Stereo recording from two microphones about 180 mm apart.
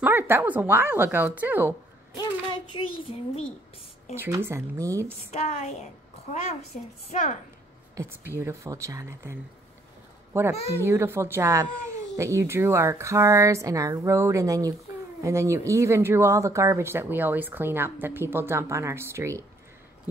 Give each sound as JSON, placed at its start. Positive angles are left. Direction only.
{"t": 0.0, "sound": "speech", "side_deg": -10}
{"t": 2.7, "sound": "a sound", "side_deg": 30}
{"t": 4.1, "sound": "speech", "side_deg": -15}
{"t": 5.3, "sound": "a sound", "side_deg": 35}
{"t": 7.1, "sound": "a woman's voice", "side_deg": 45}
{"t": 7.9, "sound": "speech", "side_deg": -15}